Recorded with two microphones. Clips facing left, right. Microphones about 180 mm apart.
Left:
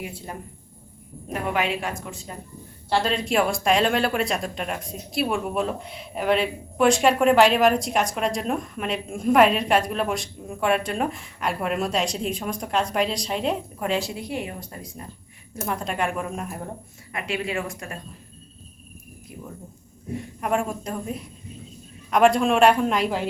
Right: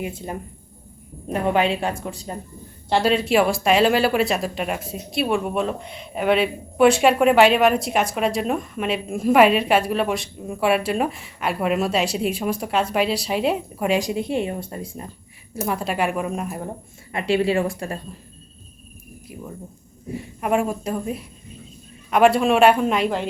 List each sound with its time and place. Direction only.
0.0 s a woman's voice: 20° right (ahead or behind)
2.9 s speech: 10° right (ahead or behind); by 15.0 s 30° right (ahead or behind)
15.6 s speech: 5° right (ahead or behind)
17.1 s a woman's voice: 30° right (ahead or behind)
20.1 s speech: 5° right (ahead or behind)